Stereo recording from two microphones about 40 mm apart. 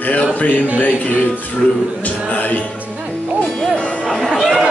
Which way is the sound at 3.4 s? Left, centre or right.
Left.